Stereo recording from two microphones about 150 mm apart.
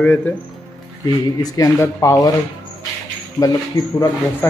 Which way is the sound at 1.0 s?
25° left (ahead or behind).